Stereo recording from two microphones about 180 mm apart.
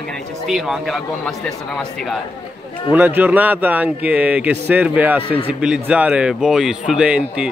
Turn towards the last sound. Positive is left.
turn(degrees=-5)  # may be behind; listen again after turning